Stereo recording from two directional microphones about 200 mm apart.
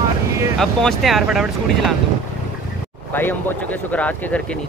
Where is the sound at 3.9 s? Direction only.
5° left (ahead or behind).